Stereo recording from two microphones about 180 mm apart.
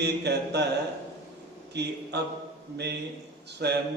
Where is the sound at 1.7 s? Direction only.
70° right (ahead or behind).